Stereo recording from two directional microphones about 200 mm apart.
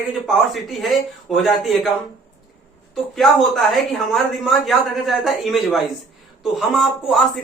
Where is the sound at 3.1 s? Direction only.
Centre (ahead or behind).